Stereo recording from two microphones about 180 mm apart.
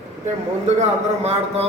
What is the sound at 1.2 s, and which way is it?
Speech, 35° right (ahead or behind).